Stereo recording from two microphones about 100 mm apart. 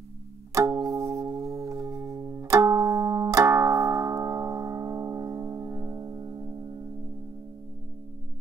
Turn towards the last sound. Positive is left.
turn(degrees=-35)  # may be behind; listen again after turning